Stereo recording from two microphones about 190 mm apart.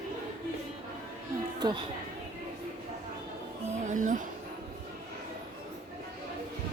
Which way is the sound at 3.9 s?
40° right (ahead or behind).